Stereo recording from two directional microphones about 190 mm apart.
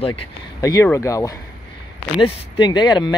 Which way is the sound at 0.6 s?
15° left (ahead or behind).